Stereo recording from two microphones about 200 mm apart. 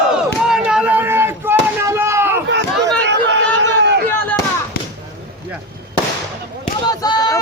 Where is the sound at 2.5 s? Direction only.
60° right (ahead or behind).